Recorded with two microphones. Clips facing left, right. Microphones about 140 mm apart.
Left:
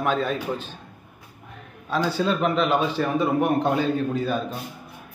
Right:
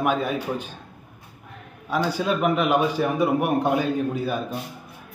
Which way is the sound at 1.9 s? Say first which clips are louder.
Even; 10° right (ahead or behind).